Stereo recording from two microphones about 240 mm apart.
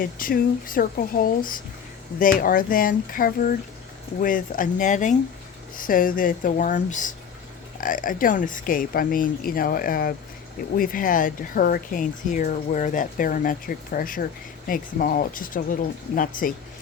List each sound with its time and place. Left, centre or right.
0.0 s speech: left